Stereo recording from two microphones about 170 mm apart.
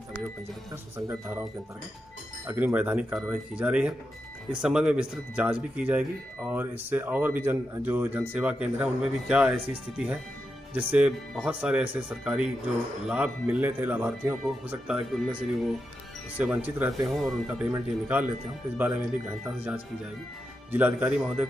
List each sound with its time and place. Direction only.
0.9 s speech: 15° right (ahead or behind)
2.4 s speech: 10° right (ahead or behind)
16.3 s speech: 10° right (ahead or behind)
20.7 s speech: 10° right (ahead or behind)